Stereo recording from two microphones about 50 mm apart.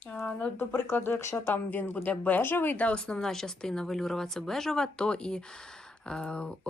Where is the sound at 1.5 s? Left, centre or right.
Left.